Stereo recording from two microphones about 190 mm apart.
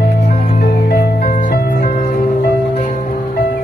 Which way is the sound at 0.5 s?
55° left (ahead or behind).